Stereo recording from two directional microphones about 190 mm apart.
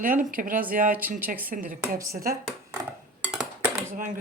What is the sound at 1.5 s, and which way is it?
Speech, 45° right (ahead or behind).